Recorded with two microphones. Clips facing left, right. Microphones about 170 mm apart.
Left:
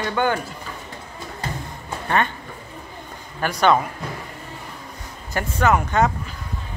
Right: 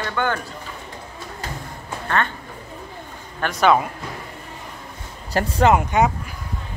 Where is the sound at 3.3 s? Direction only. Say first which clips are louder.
Right 1 dB; centre (ahead or behind).